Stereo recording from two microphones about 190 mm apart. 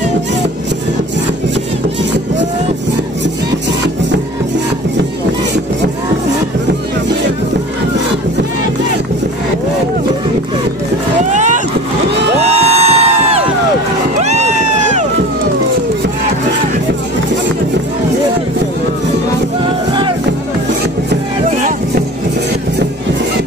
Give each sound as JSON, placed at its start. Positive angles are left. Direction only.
{"t": 11.3, "sound": "vehicle", "side_deg": -40}
{"t": 12.5, "sound": "music", "side_deg": -35}
{"t": 14.2, "sound": "crowd", "side_deg": -35}
{"t": 19.9, "sound": "music", "side_deg": -25}